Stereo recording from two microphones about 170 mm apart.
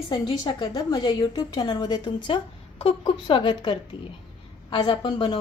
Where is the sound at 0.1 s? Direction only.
25° left (ahead or behind).